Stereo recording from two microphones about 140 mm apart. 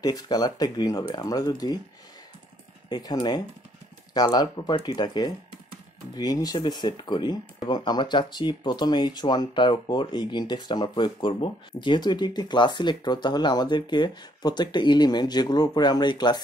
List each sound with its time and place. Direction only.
0.0 s speech: 30° left (ahead or behind)
2.9 s speech: 30° left (ahead or behind)